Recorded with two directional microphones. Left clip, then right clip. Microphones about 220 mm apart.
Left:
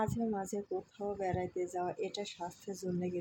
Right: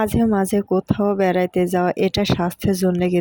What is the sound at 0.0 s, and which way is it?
Speech, 45° right (ahead or behind).